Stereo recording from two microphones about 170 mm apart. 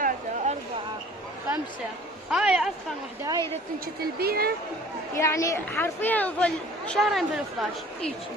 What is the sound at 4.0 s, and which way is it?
Speech, 65° right (ahead or behind).